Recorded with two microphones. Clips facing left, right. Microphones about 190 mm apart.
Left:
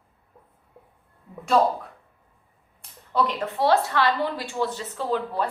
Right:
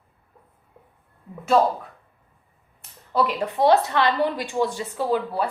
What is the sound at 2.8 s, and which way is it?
A woman's voice, 5° right (ahead or behind).